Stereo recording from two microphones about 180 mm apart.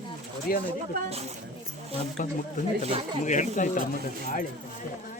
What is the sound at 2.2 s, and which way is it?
Speech, 45° left (ahead or behind).